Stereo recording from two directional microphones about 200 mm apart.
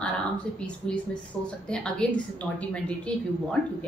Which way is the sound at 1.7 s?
5° left (ahead or behind).